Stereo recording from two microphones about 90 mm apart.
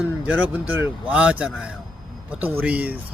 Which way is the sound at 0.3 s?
15° right (ahead or behind).